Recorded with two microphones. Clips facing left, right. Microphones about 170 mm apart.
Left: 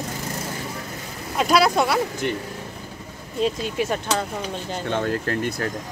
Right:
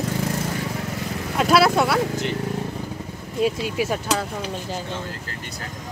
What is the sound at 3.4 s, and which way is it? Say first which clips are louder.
Speech: right 1 dB; 5° right (ahead or behind).